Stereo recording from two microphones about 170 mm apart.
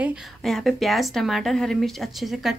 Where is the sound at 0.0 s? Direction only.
Centre (ahead or behind).